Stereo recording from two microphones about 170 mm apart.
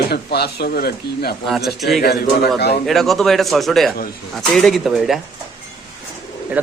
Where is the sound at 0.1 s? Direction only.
70° left (ahead or behind).